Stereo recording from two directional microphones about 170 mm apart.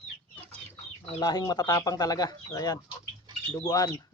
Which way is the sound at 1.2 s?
20° left (ahead or behind).